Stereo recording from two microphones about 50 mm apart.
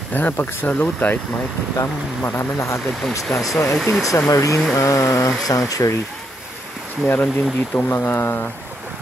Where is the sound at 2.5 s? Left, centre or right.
Left.